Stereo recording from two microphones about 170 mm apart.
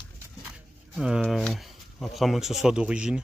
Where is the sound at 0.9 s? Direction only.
5° right (ahead or behind).